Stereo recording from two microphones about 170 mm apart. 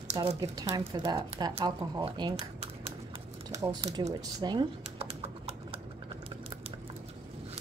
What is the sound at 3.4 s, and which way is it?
Speech, 20° right (ahead or behind).